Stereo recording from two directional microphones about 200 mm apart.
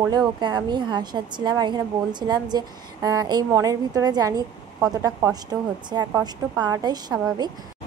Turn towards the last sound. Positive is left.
turn(degrees=-20)  # may be behind; listen again after turning